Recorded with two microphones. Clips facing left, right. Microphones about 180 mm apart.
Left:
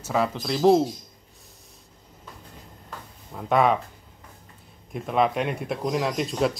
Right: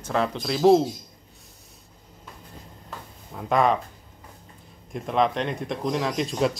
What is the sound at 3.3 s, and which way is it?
Speech, centre (ahead or behind).